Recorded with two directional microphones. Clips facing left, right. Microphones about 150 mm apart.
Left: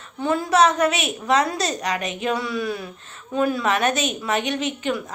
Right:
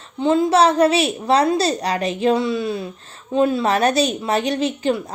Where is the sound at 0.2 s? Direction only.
25° right (ahead or behind).